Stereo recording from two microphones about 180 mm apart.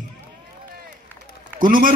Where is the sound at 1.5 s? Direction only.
50° right (ahead or behind).